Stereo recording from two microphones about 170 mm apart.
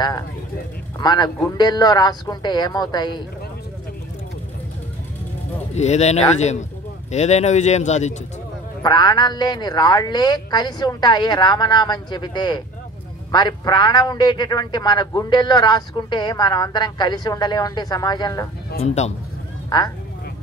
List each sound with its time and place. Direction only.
0.9 s a man's voice: 25° left (ahead or behind)
5.8 s speech: 40° left (ahead or behind)
8.8 s a man's voice: 25° left (ahead or behind)
18.8 s speech: 40° left (ahead or behind)
19.7 s a man's voice: 25° left (ahead or behind)